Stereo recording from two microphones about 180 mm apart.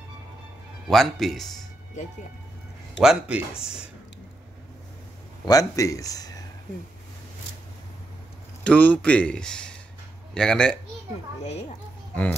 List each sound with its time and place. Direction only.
0.8 s speech: centre (ahead or behind)
3.0 s speech: 5° right (ahead or behind)
5.4 s speech: 20° left (ahead or behind)
8.6 s speech: 10° left (ahead or behind)